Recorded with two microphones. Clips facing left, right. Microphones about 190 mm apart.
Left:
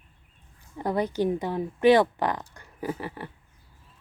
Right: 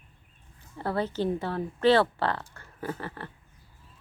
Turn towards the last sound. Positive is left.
turn(degrees=15)  # may be behind; listen again after turning